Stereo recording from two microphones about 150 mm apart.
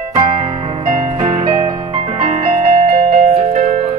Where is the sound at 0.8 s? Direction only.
50° right (ahead or behind).